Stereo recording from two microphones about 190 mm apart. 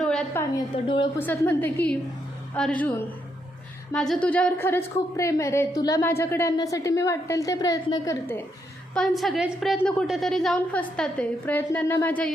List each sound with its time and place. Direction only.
0.0 s a sound: 5° left (ahead or behind)
0.5 s a woman's voice: 25° left (ahead or behind)
1.2 s a woman's voice: 10° left (ahead or behind)
3.9 s a woman's voice: 5° left (ahead or behind)
9.0 s a woman's voice: centre (ahead or behind)